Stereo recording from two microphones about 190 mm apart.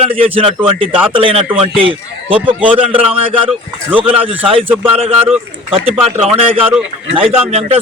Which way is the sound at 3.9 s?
30° right (ahead or behind).